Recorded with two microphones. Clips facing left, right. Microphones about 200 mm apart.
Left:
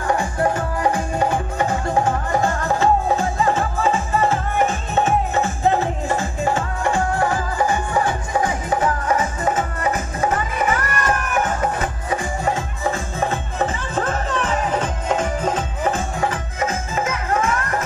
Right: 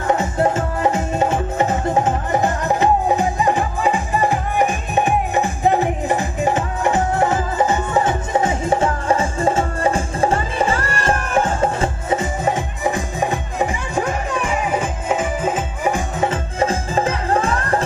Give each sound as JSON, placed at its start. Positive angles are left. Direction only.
{"t": 0.1, "sound": "music", "side_deg": -25}
{"t": 16.2, "sound": "music", "side_deg": -25}